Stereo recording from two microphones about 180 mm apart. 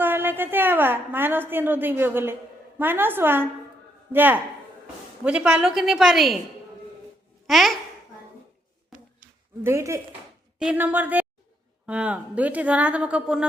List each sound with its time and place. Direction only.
0.0 s a sound: 10° right (ahead or behind)
2.7 s a woman's voice: 10° right (ahead or behind)
7.4 s speech: centre (ahead or behind)
9.6 s speech: 15° right (ahead or behind)